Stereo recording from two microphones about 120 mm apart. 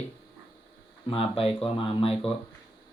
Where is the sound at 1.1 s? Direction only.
50° left (ahead or behind).